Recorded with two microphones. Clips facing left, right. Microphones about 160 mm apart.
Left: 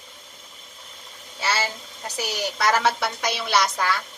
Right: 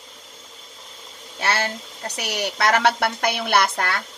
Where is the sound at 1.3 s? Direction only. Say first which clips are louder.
Right 2 dB; 60° right (ahead or behind).